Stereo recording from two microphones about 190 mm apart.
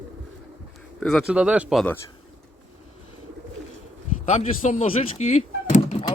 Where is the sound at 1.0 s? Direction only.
Centre (ahead or behind).